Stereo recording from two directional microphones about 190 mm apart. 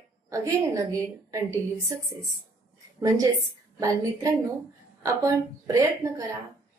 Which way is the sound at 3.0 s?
15° right (ahead or behind).